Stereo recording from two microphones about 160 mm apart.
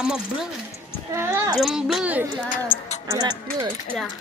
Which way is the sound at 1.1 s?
15° right (ahead or behind).